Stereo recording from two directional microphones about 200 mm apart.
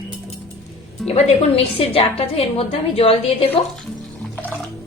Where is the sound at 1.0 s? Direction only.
30° left (ahead or behind).